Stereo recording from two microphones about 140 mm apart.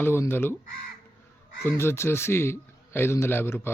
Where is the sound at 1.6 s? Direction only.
15° left (ahead or behind).